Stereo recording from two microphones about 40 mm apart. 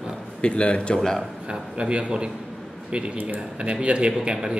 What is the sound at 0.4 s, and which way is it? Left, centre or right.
Speech, left.